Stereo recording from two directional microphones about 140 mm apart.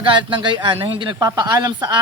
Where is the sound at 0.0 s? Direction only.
35° right (ahead or behind).